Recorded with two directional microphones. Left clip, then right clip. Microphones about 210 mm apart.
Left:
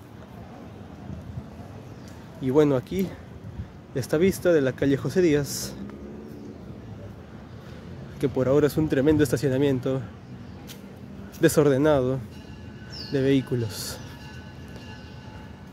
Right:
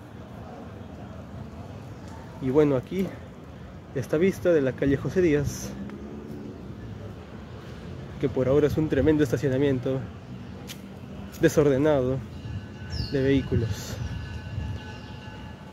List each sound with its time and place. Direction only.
2.4 s speech: 15° left (ahead or behind)
8.2 s speech: 15° left (ahead or behind)
11.4 s speech: 15° left (ahead or behind)